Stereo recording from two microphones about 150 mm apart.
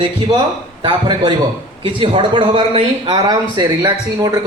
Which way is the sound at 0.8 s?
35° right (ahead or behind).